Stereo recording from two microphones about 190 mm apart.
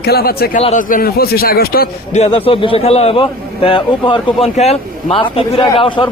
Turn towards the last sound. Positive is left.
turn(degrees=25)  # may be behind; listen again after turning